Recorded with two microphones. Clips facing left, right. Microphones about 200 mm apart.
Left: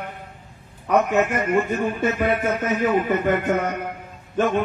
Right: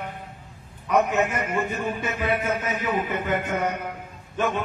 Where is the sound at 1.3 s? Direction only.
55° left (ahead or behind).